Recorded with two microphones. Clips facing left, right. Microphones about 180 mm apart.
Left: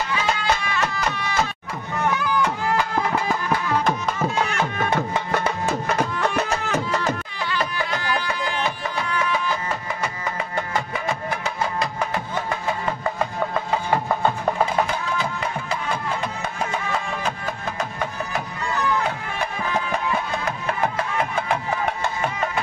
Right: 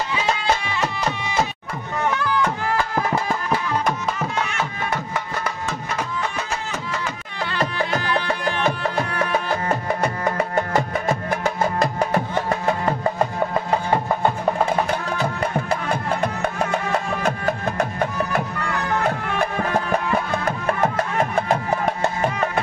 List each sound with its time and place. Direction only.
0.7 s music: 20° right (ahead or behind)
5.9 s music: 60° left (ahead or behind)
8.3 s music: 50° right (ahead or behind)
10.3 s music: 45° right (ahead or behind)
15.1 s music: 60° right (ahead or behind); by 21.9 s 40° right (ahead or behind)